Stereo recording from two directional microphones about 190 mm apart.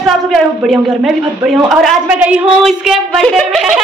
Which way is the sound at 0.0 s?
Centre (ahead or behind).